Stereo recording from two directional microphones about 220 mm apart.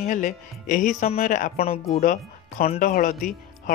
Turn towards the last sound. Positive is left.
turn(degrees=35)  # may be behind; listen again after turning